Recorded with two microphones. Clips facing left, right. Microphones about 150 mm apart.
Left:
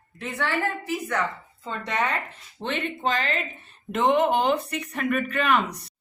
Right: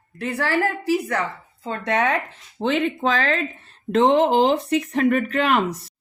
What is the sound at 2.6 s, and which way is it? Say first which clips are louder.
Speech: right 7 dB; 90° right.